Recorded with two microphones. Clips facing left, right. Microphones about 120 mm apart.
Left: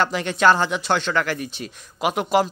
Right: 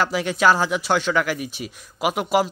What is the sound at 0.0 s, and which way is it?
Speech, 5° right (ahead or behind).